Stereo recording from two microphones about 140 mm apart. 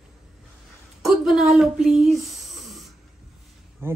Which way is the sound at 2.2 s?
Centre (ahead or behind).